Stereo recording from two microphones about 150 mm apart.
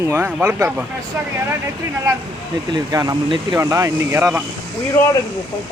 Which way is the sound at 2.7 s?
25° right (ahead or behind).